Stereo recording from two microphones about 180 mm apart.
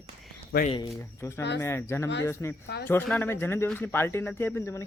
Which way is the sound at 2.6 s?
65° left (ahead or behind).